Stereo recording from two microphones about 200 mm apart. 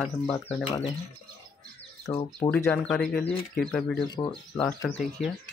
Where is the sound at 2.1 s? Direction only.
15° left (ahead or behind).